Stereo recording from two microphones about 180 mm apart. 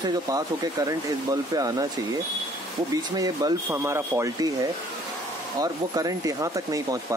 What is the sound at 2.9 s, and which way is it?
Speech, 20° right (ahead or behind).